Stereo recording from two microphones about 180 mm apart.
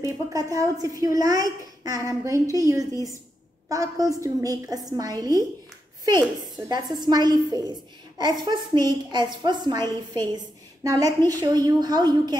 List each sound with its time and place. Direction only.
0.0 s a woman's voice: 20° right (ahead or behind)